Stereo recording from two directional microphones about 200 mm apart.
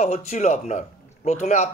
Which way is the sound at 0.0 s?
35° left (ahead or behind).